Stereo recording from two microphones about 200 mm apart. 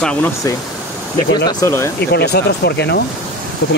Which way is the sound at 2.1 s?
55° left (ahead or behind).